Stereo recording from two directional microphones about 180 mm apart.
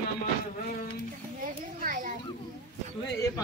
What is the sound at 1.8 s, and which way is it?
Children playing, 50° right (ahead or behind).